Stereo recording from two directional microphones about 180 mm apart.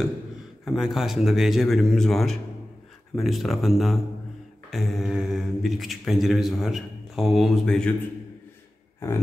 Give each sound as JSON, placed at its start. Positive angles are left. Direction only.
{"t": 0.7, "sound": "speech", "side_deg": 0}
{"t": 9.0, "sound": "grunt", "side_deg": 15}